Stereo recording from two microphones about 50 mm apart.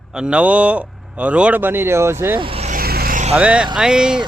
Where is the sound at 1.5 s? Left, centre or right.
Right.